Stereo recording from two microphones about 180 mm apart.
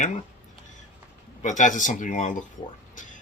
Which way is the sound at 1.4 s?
40° left (ahead or behind).